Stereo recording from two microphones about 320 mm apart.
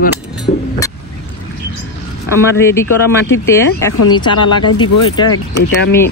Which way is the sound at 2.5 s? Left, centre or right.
Centre.